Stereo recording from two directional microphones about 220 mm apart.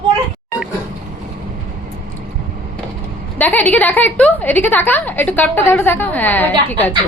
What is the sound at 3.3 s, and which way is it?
A woman's voice, 10° left (ahead or behind).